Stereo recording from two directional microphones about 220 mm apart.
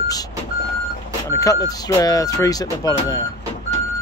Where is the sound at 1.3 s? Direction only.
15° left (ahead or behind).